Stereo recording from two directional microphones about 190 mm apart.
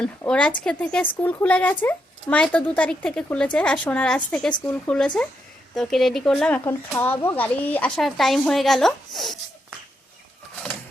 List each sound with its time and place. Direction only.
0.0 s speech: 5° left (ahead or behind)